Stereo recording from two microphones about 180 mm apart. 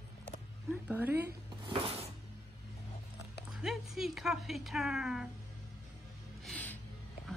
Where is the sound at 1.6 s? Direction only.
30° right (ahead or behind).